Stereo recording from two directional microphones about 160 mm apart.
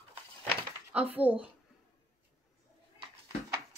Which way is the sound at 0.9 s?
10° right (ahead or behind).